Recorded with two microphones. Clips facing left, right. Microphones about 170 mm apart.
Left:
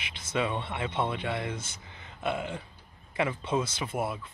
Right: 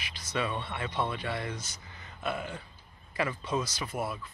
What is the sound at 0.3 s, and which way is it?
Speech, 20° left (ahead or behind).